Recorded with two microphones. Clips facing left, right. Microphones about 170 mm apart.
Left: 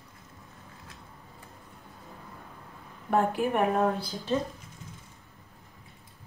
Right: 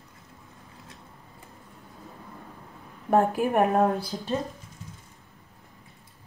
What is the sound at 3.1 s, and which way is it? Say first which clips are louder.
Speech: right 3 dB; 45° right (ahead or behind).